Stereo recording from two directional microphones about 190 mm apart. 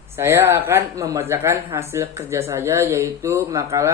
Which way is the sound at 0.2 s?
15° right (ahead or behind).